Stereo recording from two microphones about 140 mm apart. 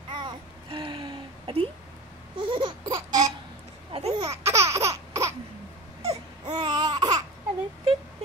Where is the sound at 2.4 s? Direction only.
35° right (ahead or behind).